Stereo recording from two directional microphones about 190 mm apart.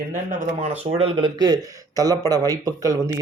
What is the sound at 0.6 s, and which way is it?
Speech, 35° right (ahead or behind).